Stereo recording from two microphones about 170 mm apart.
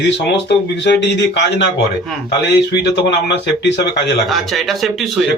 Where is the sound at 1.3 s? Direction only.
90° left.